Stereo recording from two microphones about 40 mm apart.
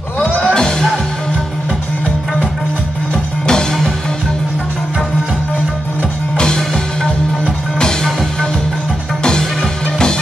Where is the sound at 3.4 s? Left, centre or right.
Centre.